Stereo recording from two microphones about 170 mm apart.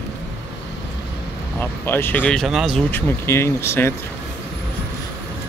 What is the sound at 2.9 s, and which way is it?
Speech, 15° left (ahead or behind).